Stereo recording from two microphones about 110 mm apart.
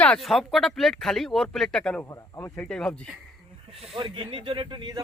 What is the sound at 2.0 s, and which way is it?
Speech, 30° left (ahead or behind).